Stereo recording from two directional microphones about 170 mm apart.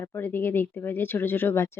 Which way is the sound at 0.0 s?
10° left (ahead or behind).